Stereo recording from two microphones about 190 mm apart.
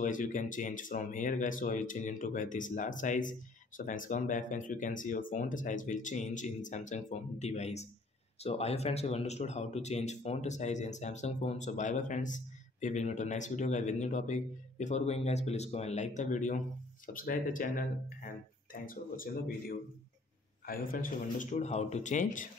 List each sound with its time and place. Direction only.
0.0 s speech: 45° left (ahead or behind)